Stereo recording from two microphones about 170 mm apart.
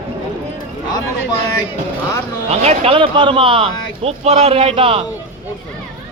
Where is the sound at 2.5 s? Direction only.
40° right (ahead or behind).